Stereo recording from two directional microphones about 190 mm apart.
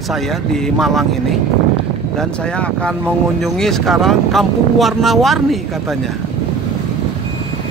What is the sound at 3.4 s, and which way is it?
Speech, centre (ahead or behind).